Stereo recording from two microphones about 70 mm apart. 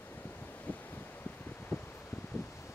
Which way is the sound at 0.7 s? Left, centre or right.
Left.